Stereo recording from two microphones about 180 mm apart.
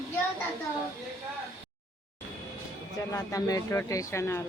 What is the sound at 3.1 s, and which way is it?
Speech, 20° left (ahead or behind).